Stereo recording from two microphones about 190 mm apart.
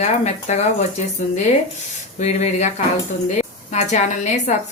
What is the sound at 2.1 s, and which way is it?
Speech, 35° left (ahead or behind).